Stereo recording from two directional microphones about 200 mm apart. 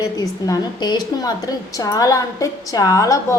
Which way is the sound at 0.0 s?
20° left (ahead or behind).